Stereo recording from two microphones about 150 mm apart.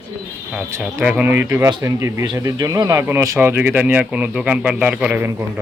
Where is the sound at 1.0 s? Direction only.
10° right (ahead or behind).